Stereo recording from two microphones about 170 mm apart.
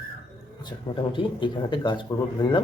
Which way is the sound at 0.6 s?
25° left (ahead or behind).